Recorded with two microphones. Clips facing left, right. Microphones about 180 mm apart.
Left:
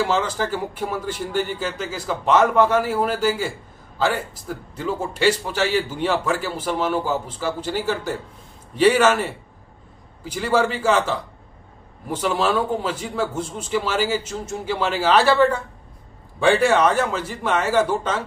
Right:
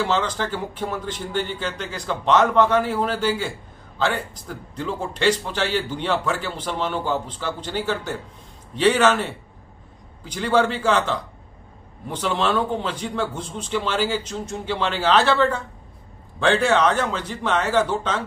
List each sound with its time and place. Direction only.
0.0 s a man's voice: 10° left (ahead or behind)